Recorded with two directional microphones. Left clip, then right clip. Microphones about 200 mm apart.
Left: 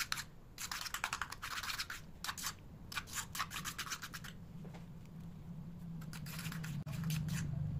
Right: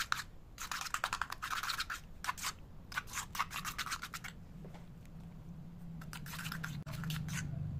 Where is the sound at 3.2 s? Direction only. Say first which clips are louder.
Right 3 dB; 10° right (ahead or behind).